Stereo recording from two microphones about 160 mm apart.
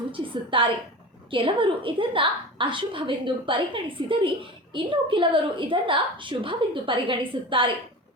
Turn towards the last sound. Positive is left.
turn(degrees=-30)  # may be behind; listen again after turning